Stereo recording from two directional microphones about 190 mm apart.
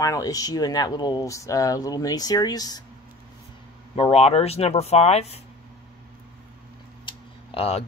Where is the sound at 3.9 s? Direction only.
30° left (ahead or behind).